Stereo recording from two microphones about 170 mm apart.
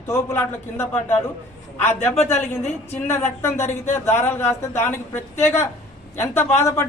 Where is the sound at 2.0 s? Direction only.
40° left (ahead or behind).